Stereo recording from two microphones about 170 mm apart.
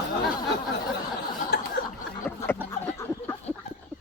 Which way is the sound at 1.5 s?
75° left (ahead or behind).